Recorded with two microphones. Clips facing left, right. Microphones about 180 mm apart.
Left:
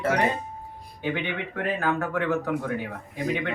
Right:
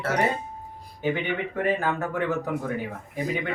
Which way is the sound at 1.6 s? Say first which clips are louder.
Even; 15° right (ahead or behind).